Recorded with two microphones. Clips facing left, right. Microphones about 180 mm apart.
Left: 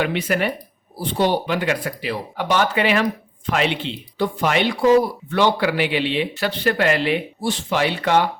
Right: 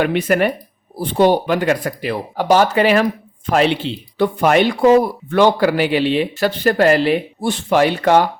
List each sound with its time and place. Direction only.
0.0 s a man's voice: 50° right (ahead or behind)
4.2 s a man's voice: 50° right (ahead or behind)